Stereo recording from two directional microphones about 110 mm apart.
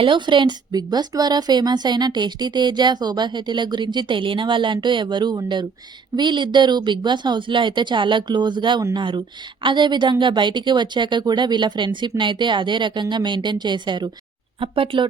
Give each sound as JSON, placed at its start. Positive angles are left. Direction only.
{"t": 0.0, "sound": "speech", "side_deg": -45}